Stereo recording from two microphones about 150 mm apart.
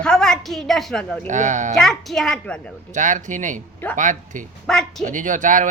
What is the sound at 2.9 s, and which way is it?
Speech, 55° right (ahead or behind).